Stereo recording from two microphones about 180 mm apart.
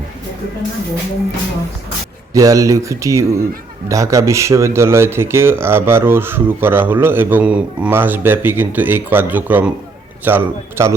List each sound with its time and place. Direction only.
2.3 s speech: 20° right (ahead or behind)